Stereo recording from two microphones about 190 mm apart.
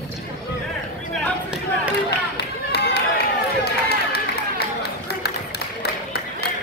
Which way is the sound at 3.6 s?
55° left (ahead or behind).